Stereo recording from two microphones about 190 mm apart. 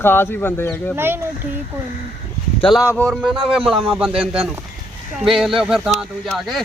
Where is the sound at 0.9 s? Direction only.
10° right (ahead or behind).